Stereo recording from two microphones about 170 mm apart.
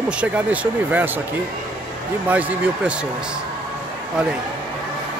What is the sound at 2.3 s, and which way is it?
Speech, 10° right (ahead or behind).